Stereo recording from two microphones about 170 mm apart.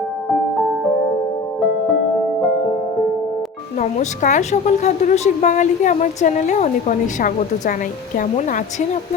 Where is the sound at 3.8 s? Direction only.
45° left (ahead or behind).